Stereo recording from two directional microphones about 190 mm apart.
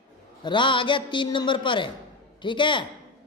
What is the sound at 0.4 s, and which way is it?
A woman's voice, 25° left (ahead or behind).